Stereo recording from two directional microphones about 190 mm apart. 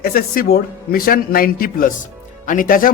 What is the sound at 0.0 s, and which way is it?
A man's voice, 50° left (ahead or behind).